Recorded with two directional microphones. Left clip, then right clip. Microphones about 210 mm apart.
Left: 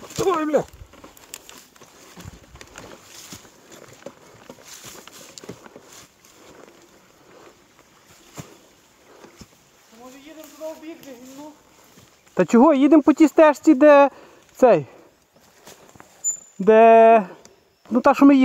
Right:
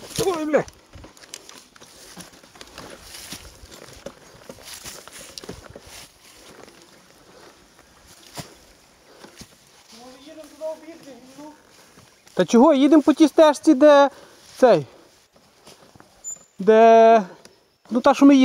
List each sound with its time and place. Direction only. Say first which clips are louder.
0.2 s speech: left 1 dB; centre (ahead or behind)
5.4 s a sound: right 2 dB; 10° right (ahead or behind)
12.4 s speech: even; 5° left (ahead or behind)
16.6 s speech: left 1 dB; 5° right (ahead or behind)